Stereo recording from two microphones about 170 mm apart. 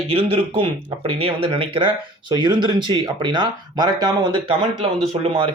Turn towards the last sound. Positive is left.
turn(degrees=-35)  # may be behind; listen again after turning